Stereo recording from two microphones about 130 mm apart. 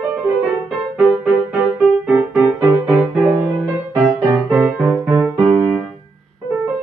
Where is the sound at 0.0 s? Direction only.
10° right (ahead or behind).